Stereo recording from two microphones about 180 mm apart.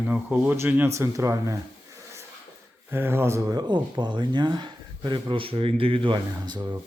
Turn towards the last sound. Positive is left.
turn(degrees=-20)  # may be behind; listen again after turning